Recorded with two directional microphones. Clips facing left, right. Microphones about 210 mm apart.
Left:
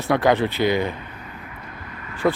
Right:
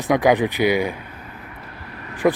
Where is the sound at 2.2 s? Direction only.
10° right (ahead or behind).